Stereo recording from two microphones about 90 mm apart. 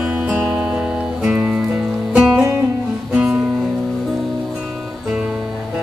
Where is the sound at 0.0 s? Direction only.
15° right (ahead or behind).